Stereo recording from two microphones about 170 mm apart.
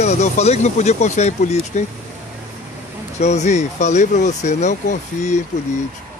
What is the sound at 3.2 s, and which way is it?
Speech, 40° left (ahead or behind).